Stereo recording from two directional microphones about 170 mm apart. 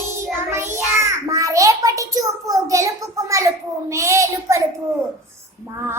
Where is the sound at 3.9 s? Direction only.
15° right (ahead or behind).